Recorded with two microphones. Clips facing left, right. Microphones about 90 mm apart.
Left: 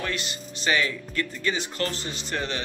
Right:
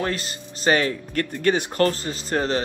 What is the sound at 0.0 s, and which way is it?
Speech, 40° right (ahead or behind).